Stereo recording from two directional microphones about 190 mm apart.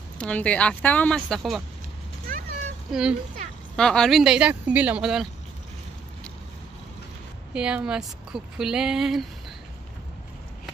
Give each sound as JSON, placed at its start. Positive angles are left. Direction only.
{"t": 0.2, "sound": "speech", "side_deg": 5}
{"t": 2.3, "sound": "a sound", "side_deg": -45}
{"t": 2.9, "sound": "a woman's voice", "side_deg": -5}
{"t": 7.5, "sound": "a woman's voice", "side_deg": -5}